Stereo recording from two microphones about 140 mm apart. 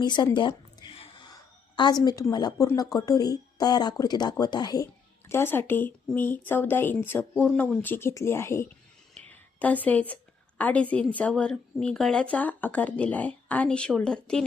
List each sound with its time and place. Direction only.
0.0 s a woman's voice: 30° left (ahead or behind)
5.3 s a woman's voice: 15° left (ahead or behind)